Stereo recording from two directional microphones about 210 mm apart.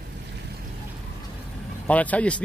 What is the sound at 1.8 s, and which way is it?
Speech, 5° left (ahead or behind).